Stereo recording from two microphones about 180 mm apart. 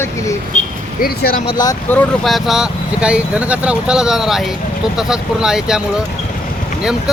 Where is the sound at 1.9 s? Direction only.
5° left (ahead or behind).